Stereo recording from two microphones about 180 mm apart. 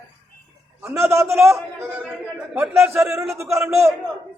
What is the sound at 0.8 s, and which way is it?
A man's voice, 15° right (ahead or behind).